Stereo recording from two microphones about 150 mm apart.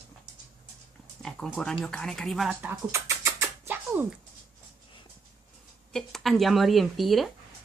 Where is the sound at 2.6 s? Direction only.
15° right (ahead or behind).